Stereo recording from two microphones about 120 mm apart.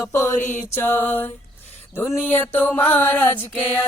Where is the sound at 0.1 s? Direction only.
20° left (ahead or behind).